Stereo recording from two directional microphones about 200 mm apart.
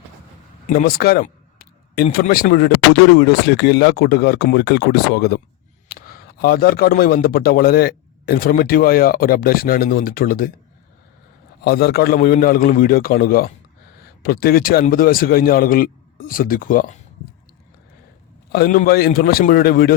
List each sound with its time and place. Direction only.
0.7 s a sound: 45° left (ahead or behind)
2.1 s a man's voice: 50° left (ahead or behind)
11.6 s a man's voice: 55° left (ahead or behind)
18.5 s a man's voice: 45° left (ahead or behind)